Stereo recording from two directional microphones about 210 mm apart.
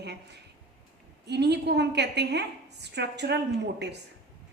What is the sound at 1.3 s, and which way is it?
A woman's voice, 55° right (ahead or behind).